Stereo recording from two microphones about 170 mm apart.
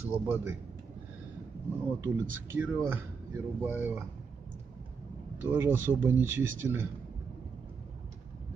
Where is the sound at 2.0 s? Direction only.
15° right (ahead or behind).